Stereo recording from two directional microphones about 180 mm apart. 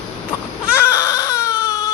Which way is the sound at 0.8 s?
15° left (ahead or behind).